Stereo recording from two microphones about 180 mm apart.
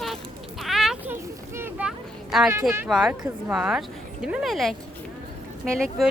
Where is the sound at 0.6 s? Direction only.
Centre (ahead or behind).